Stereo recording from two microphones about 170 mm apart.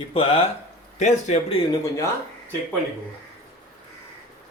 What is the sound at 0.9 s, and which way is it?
Speech, 45° left (ahead or behind).